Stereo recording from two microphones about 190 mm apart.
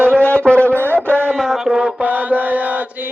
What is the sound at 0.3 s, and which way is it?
Music, 5° left (ahead or behind).